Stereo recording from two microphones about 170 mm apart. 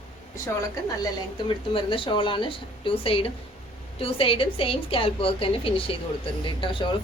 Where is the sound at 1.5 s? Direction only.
30° left (ahead or behind).